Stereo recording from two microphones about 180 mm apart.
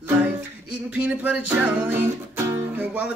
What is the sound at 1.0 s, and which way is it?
Music, 5° right (ahead or behind).